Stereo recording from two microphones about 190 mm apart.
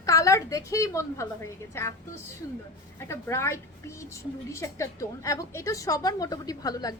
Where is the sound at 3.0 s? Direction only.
15° left (ahead or behind).